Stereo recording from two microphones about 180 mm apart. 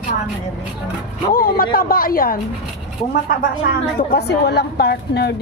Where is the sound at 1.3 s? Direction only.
55° left (ahead or behind).